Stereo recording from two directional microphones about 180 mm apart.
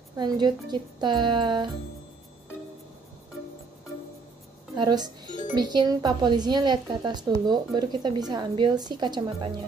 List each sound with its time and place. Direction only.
0.2 s speech: 25° right (ahead or behind)
4.7 s speech: 25° right (ahead or behind)